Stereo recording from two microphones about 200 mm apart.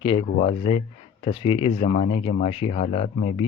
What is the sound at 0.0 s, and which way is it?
Speech, 25° left (ahead or behind).